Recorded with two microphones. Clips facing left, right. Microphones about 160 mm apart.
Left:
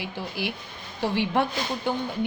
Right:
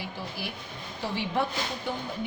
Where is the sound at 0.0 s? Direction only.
75° left (ahead or behind).